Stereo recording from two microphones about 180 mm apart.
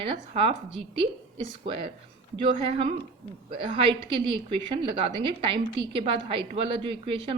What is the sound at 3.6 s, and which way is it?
A woman's voice, 30° right (ahead or behind).